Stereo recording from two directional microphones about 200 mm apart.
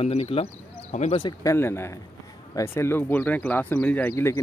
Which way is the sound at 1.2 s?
20° left (ahead or behind).